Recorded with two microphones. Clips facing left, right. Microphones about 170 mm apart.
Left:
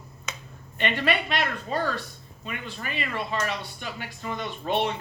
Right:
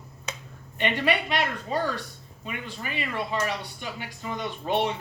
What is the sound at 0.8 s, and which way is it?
Speech, 15° right (ahead or behind).